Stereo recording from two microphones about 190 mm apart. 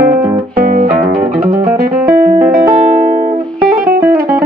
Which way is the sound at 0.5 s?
45° right (ahead or behind).